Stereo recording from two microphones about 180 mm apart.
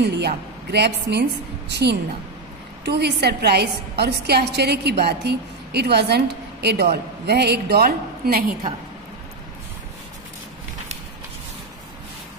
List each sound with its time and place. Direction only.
0.0 s a woman's voice: 65° right (ahead or behind)